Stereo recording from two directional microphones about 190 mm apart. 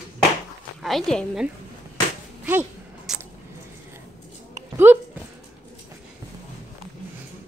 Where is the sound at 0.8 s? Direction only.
Centre (ahead or behind).